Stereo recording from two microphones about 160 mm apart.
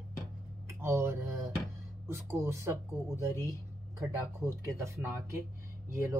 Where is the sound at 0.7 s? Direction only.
15° right (ahead or behind).